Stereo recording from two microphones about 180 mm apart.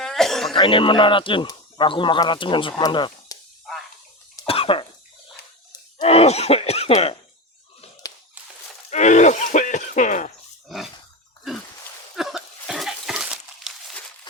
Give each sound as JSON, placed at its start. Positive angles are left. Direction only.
{"t": 0.0, "sound": "cough", "side_deg": 0}
{"t": 0.5, "sound": "speech", "side_deg": 30}
{"t": 4.4, "sound": "cough", "side_deg": 30}
{"t": 6.0, "sound": "a sound", "side_deg": 35}
{"t": 8.9, "sound": "speech", "side_deg": 40}
{"t": 12.1, "sound": "a sound", "side_deg": 0}